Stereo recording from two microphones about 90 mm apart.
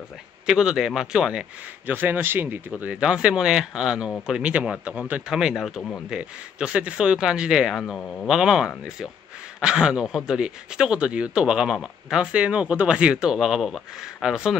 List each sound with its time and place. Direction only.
0.5 s speech: 5° right (ahead or behind)
1.9 s speech: 20° right (ahead or behind)
2.7 s speech: 10° right (ahead or behind)
5.3 s speech: 5° right (ahead or behind)
7.8 s speech: 10° left (ahead or behind)
8.3 s speech: 5° right (ahead or behind)